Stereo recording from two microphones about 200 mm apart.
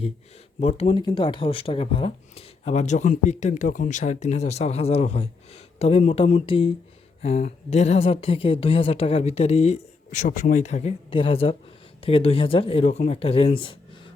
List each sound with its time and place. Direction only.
0.6 s speech: 35° left (ahead or behind)